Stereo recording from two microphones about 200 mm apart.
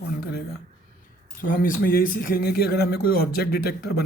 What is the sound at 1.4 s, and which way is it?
Speech, 45° left (ahead or behind).